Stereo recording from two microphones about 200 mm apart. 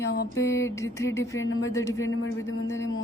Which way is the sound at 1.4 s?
75° left (ahead or behind).